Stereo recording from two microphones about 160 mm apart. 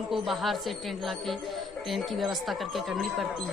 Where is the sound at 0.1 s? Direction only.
Centre (ahead or behind).